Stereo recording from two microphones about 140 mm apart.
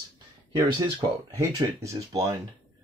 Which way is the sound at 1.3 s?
20° right (ahead or behind).